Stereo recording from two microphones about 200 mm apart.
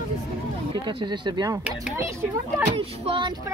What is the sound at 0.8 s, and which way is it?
Speech, 25° right (ahead or behind).